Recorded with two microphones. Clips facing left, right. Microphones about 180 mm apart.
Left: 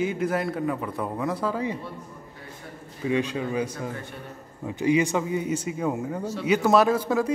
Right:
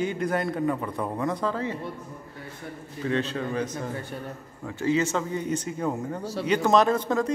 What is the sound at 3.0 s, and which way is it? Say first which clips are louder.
Speech: left 2 dB; 10° left (ahead or behind).